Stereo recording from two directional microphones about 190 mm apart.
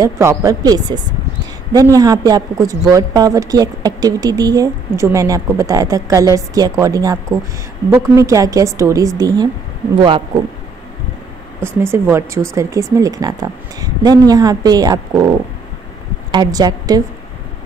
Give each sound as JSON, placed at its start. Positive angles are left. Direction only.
{"t": 0.0, "sound": "a woman's voice", "side_deg": -15}
{"t": 11.6, "sound": "a woman's voice", "side_deg": -15}